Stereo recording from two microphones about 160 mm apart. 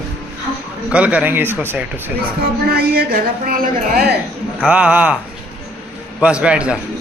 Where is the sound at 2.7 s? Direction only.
70° right (ahead or behind).